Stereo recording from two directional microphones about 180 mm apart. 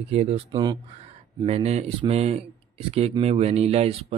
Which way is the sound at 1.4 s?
35° right (ahead or behind).